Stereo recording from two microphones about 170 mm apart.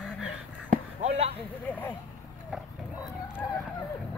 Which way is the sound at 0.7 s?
35° right (ahead or behind).